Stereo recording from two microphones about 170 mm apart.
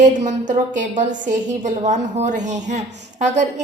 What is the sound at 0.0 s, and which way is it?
A woman's voice, 45° right (ahead or behind).